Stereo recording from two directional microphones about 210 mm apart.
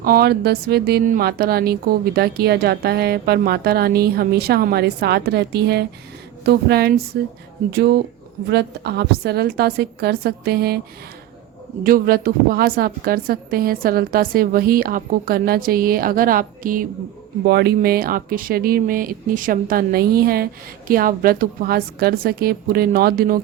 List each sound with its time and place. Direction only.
0.0 s speech: 45° right (ahead or behind)
11.8 s speech: 45° right (ahead or behind)